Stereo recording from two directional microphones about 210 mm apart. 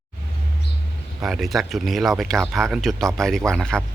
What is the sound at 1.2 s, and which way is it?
Speech, centre (ahead or behind).